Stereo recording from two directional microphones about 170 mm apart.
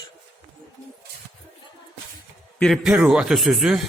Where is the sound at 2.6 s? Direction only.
Centre (ahead or behind).